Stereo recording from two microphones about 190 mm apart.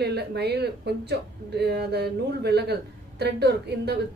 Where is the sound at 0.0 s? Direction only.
60° right (ahead or behind).